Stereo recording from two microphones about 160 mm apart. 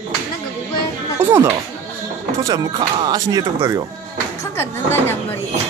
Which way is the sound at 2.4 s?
25° right (ahead or behind).